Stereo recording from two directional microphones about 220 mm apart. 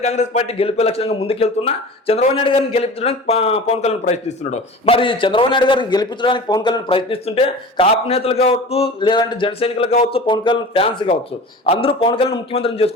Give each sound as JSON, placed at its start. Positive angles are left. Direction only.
{"t": 0.0, "sound": "a man's voice", "side_deg": 30}